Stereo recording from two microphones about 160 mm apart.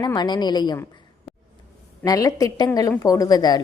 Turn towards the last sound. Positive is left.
turn(degrees=25)  # may be behind; listen again after turning